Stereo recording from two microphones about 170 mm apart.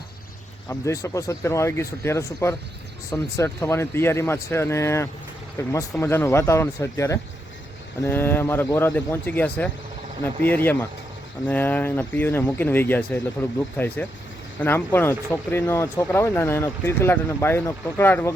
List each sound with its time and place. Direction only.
0.7 s speech: 15° left (ahead or behind)